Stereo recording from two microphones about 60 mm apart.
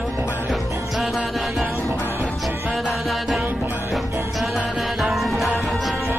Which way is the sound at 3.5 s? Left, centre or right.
Right.